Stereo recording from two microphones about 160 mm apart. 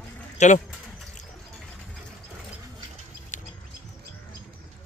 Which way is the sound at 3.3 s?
50° left (ahead or behind).